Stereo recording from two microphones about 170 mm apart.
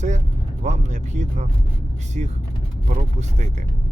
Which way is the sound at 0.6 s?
45° right (ahead or behind).